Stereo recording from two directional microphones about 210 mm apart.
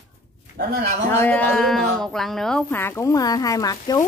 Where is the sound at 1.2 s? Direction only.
5° left (ahead or behind).